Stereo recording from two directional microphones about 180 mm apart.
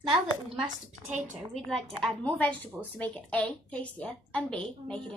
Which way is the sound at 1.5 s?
Centre (ahead or behind).